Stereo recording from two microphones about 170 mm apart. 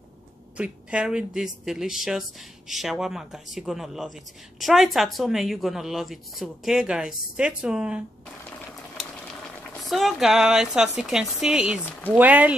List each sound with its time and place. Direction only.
0.6 s speech: 5° right (ahead or behind)
9.8 s speech: centre (ahead or behind)